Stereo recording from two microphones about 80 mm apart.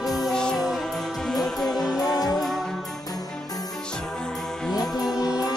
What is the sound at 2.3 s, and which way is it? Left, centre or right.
Music, centre.